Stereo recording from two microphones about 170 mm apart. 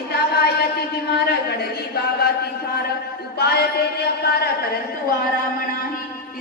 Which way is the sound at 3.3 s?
70° left (ahead or behind).